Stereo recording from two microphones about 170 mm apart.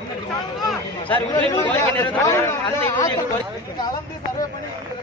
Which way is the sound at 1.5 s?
20° left (ahead or behind).